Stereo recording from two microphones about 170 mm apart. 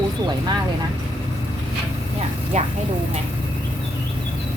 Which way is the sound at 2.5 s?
45° right (ahead or behind).